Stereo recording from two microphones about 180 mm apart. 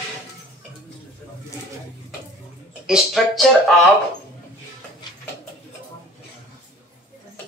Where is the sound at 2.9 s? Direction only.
Centre (ahead or behind).